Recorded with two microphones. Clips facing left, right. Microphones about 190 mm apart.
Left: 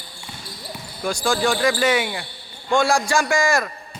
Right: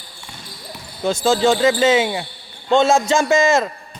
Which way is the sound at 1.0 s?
20° right (ahead or behind).